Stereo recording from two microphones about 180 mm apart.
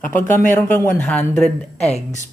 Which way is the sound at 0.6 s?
10° left (ahead or behind).